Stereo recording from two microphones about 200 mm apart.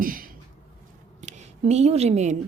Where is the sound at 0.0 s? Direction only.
45° right (ahead or behind).